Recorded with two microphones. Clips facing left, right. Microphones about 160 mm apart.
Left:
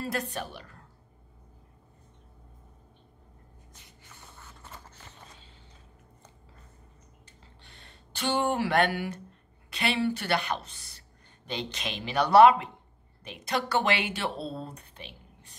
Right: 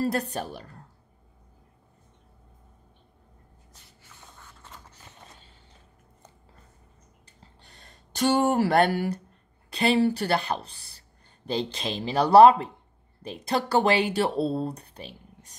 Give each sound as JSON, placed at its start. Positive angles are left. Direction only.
{"t": 0.0, "sound": "speech", "side_deg": -40}
{"t": 4.4, "sound": "a sound", "side_deg": 5}
{"t": 7.6, "sound": "speech", "side_deg": -40}